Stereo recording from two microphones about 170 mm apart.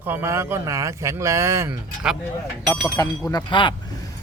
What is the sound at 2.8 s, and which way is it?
Speech, 20° left (ahead or behind).